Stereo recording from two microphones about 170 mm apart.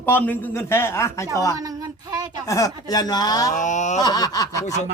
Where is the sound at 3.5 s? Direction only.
45° left (ahead or behind).